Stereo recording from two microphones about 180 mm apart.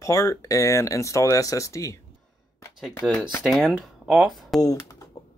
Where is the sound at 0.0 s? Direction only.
15° left (ahead or behind).